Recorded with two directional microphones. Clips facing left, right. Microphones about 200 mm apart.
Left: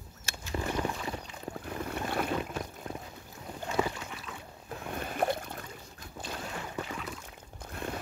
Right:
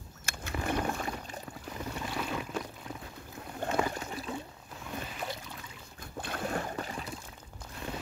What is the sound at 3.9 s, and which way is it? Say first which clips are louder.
Rowboat: right 5 dB; 40° right (ahead or behind).